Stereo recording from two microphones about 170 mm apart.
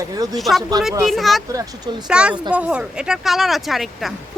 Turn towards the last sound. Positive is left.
turn(degrees=0)  # may be behind; listen again after turning